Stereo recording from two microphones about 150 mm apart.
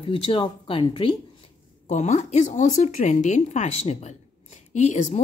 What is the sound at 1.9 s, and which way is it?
Speech, 50° left (ahead or behind).